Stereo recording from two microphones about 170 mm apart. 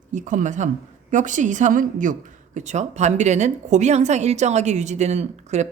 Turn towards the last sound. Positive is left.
turn(degrees=-40)  # may be behind; listen again after turning